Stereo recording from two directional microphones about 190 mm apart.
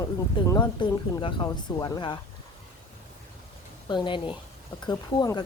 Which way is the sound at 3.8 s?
25° left (ahead or behind).